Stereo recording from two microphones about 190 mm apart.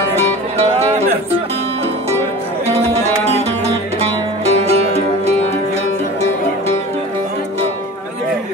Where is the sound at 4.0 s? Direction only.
35° right (ahead or behind).